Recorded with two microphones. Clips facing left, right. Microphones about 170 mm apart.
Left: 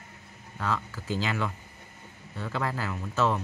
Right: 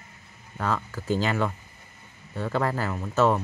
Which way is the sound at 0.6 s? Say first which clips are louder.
Right 3 dB; 45° right (ahead or behind).